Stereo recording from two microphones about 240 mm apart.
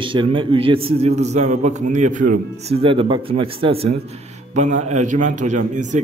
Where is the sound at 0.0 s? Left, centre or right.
Right.